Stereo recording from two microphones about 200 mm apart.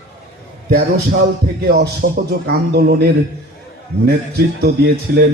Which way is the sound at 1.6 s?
50° right (ahead or behind).